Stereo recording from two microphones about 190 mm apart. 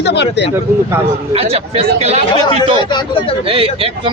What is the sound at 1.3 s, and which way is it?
Speech, 30° right (ahead or behind).